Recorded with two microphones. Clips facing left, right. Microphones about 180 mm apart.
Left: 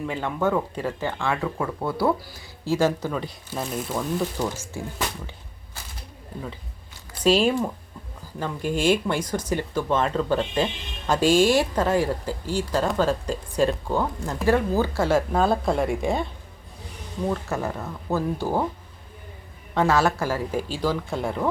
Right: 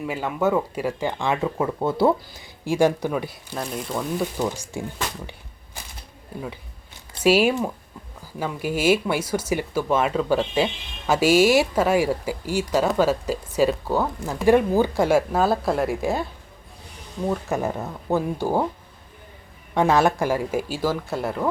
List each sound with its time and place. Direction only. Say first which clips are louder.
0.0 s speech: right 2 dB; 10° right (ahead or behind)
3.5 s speech: even; 5° left (ahead or behind)
4.4 s speech: right 2 dB; 15° right (ahead or behind)
7.2 s speech: right 1 dB; 10° right (ahead or behind)
14.4 s speech: right 4 dB; 15° right (ahead or behind)
17.5 s speech: right 3 dB; 20° right (ahead or behind)
19.7 s speech: right 2 dB; 15° right (ahead or behind)